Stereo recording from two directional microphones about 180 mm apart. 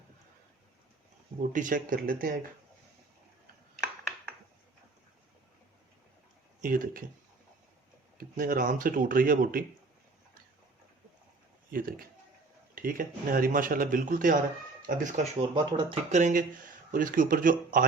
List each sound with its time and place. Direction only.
1.4 s speech: 45° right (ahead or behind)
6.6 s speech: 50° right (ahead or behind)
8.2 s speech: 50° right (ahead or behind)
11.7 s speech: 50° right (ahead or behind)
15.5 s speech: 25° right (ahead or behind)
16.1 s speech: 45° right (ahead or behind)